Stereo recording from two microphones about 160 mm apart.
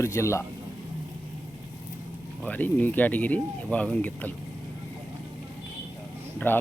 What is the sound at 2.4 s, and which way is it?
Speech, 10° left (ahead or behind).